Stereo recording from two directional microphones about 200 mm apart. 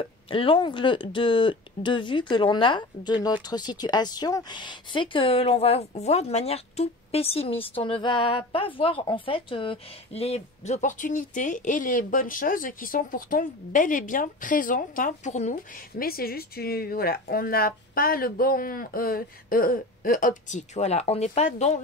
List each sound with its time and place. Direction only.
0.0 s speech: 25° left (ahead or behind)